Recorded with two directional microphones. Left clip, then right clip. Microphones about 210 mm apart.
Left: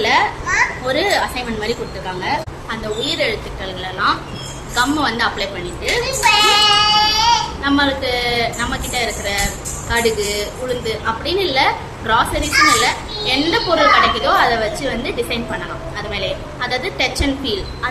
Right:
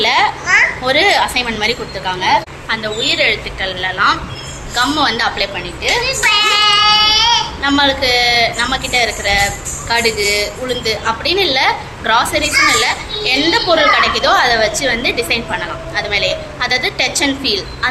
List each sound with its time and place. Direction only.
0.0 s children playing: 5° right (ahead or behind)
0.9 s a woman's voice: 5° right (ahead or behind)
6.3 s child singing: 30° left (ahead or behind)
7.6 s a woman's voice: 5° right (ahead or behind)